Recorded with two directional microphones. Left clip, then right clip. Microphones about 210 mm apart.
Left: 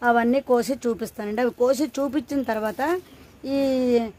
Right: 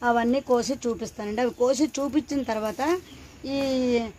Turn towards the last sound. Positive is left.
turn(degrees=35)  # may be behind; listen again after turning